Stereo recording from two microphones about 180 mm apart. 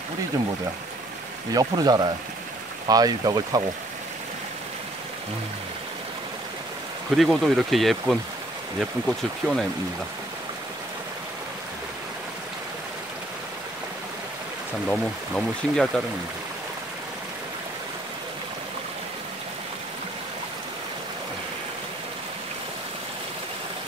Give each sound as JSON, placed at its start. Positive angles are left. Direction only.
{"t": 1.5, "sound": "speech", "side_deg": -20}
{"t": 7.2, "sound": "speech", "side_deg": 0}
{"t": 9.4, "sound": "speech", "side_deg": -10}
{"t": 14.9, "sound": "speech", "side_deg": 5}